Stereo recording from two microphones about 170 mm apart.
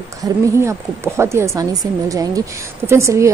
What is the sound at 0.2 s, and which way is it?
A woman's voice, 15° right (ahead or behind).